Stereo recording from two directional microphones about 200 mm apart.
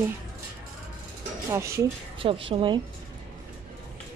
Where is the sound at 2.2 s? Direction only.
25° right (ahead or behind).